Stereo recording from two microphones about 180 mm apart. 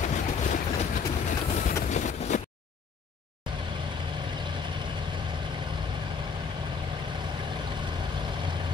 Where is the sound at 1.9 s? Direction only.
45° left (ahead or behind).